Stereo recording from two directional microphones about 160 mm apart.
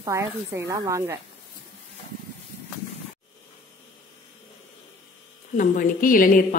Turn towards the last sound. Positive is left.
turn(degrees=60)  # may be behind; listen again after turning